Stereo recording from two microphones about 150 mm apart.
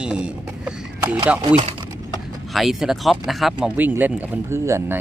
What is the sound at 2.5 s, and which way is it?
Speech, centre (ahead or behind).